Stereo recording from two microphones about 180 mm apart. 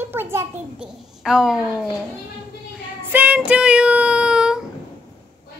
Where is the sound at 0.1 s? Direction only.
15° right (ahead or behind).